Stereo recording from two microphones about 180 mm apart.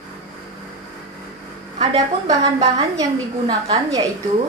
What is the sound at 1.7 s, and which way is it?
A woman's voice, 25° right (ahead or behind).